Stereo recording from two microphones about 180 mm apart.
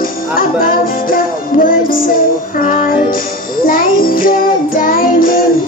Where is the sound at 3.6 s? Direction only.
50° left (ahead or behind).